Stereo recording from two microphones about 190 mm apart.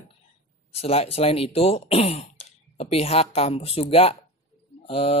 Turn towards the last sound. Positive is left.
turn(degrees=30)  # may be behind; listen again after turning